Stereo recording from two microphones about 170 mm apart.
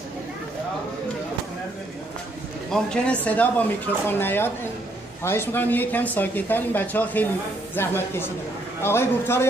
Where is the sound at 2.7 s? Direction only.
5° left (ahead or behind).